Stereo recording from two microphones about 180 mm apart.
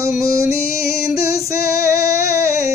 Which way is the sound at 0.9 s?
60° left (ahead or behind).